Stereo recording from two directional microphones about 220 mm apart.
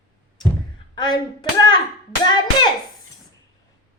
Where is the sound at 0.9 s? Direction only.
20° left (ahead or behind).